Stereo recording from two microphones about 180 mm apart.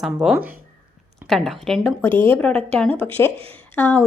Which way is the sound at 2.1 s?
30° right (ahead or behind).